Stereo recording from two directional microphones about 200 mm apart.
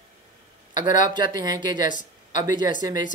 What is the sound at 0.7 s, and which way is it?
Speech, 40° left (ahead or behind).